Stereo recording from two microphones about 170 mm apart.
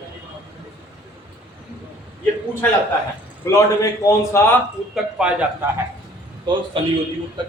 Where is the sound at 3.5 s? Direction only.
20° left (ahead or behind).